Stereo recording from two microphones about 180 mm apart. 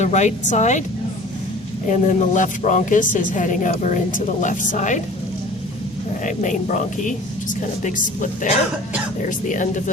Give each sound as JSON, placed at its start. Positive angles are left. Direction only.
{"t": 0.0, "sound": "speech", "side_deg": 40}
{"t": 1.9, "sound": "a woman's voice", "side_deg": 45}
{"t": 6.2, "sound": "a woman's voice", "side_deg": 45}